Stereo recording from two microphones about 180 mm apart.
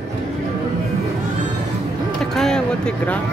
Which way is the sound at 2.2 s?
Centre (ahead or behind).